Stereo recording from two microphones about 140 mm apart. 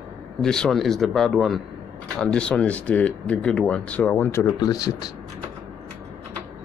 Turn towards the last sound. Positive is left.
turn(degrees=25)  # may be behind; listen again after turning